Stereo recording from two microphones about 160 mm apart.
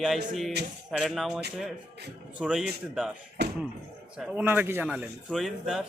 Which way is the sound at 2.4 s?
Centre (ahead or behind).